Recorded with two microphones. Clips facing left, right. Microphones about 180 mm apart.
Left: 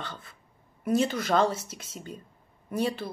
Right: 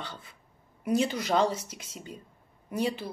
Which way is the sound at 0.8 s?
15° right (ahead or behind).